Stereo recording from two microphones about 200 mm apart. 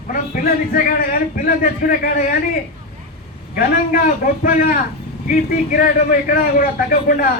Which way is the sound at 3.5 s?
45° left (ahead or behind).